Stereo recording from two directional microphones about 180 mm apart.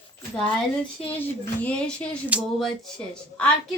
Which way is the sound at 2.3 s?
Centre (ahead or behind).